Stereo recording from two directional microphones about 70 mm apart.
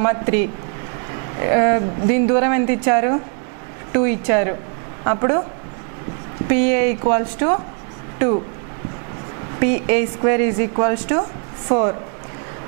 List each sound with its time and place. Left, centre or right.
0.0 s a woman's voice: centre
6.4 s a woman's voice: centre
9.6 s a woman's voice: centre